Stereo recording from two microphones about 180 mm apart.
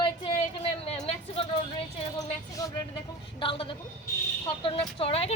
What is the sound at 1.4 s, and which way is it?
Speech, 30° left (ahead or behind).